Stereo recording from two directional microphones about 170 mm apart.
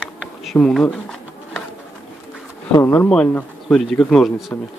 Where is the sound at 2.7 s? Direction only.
15° left (ahead or behind).